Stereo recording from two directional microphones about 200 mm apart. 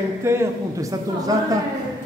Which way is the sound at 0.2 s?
15° right (ahead or behind).